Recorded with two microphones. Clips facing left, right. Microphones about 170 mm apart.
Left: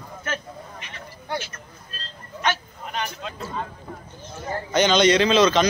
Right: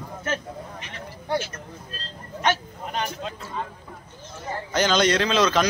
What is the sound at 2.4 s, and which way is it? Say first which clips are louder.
Vehicle: right 2 dB; 40° right (ahead or behind).